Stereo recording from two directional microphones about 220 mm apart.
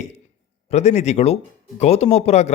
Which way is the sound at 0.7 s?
30° left (ahead or behind).